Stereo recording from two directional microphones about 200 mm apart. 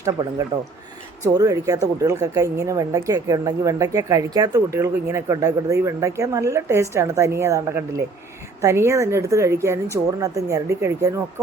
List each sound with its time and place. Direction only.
0.0 s speech: 15° right (ahead or behind)